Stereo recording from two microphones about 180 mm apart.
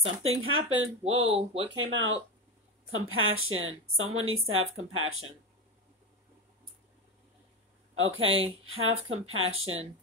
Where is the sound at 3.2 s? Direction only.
90° right.